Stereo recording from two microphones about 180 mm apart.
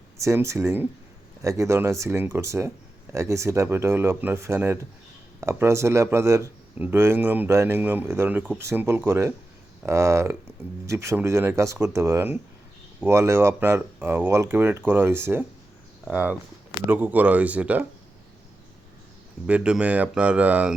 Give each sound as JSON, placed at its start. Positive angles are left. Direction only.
{"t": 0.2, "sound": "speech", "side_deg": -15}
{"t": 19.5, "sound": "speech", "side_deg": -5}